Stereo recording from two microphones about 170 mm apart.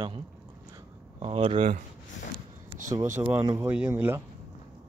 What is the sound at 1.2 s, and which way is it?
Speech, 35° right (ahead or behind).